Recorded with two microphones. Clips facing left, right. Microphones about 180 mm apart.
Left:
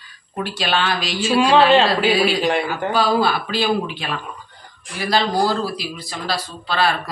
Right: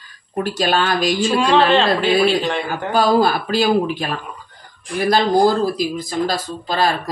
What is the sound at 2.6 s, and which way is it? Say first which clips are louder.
Speech: right 2 dB; 45° right (ahead or behind).